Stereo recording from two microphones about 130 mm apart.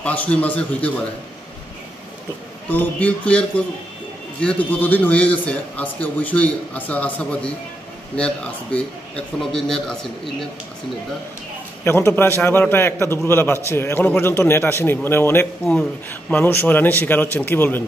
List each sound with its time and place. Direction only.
0.0 s a man's voice: 10° left (ahead or behind)
2.7 s a man's voice: 15° left (ahead or behind)
11.8 s a man's voice: 20° left (ahead or behind)
15.6 s a man's voice: 5° left (ahead or behind)